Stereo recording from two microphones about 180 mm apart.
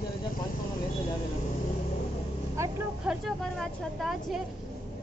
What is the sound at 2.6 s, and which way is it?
Speech, 15° right (ahead or behind).